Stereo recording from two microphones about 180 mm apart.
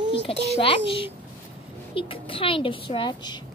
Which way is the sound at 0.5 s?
30° left (ahead or behind).